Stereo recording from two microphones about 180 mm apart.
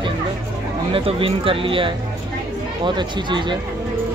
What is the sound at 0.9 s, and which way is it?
Speech, 30° right (ahead or behind).